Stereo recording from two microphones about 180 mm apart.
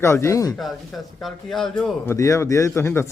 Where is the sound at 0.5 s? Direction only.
Centre (ahead or behind).